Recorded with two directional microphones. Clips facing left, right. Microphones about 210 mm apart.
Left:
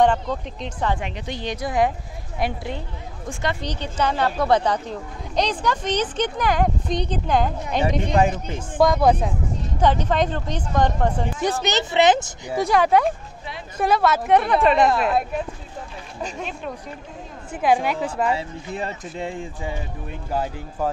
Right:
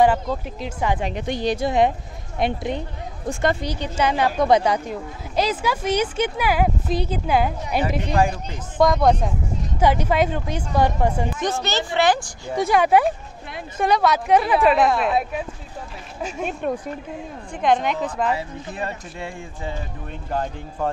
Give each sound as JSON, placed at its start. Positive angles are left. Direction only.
{"t": 0.0, "sound": "speech", "side_deg": -5}
{"t": 1.1, "sound": "speech", "side_deg": -50}
{"t": 1.4, "sound": "speech", "side_deg": -30}
{"t": 3.3, "sound": "speech", "side_deg": -45}
{"t": 3.6, "sound": "speech", "side_deg": -10}
{"t": 8.2, "sound": "speech", "side_deg": 20}
{"t": 8.7, "sound": "a woman's voice", "side_deg": 0}
{"t": 9.8, "sound": "speech", "side_deg": -10}
{"t": 11.4, "sound": "speech", "side_deg": 20}
{"t": 12.5, "sound": "a woman's voice", "side_deg": 0}
{"t": 16.4, "sound": "speech", "side_deg": -50}
{"t": 17.5, "sound": "speech", "side_deg": 5}
{"t": 18.3, "sound": "speech", "side_deg": 20}